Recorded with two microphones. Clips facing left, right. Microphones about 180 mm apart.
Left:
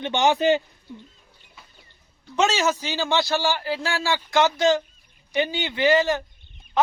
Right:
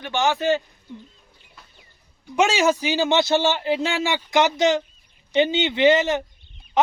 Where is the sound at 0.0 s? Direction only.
20° left (ahead or behind).